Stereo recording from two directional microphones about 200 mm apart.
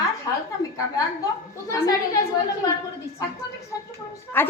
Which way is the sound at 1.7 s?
15° left (ahead or behind).